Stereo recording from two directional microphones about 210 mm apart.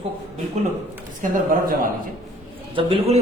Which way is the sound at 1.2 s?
40° right (ahead or behind).